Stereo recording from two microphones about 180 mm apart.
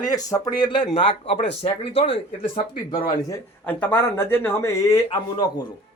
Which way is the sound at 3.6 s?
10° left (ahead or behind).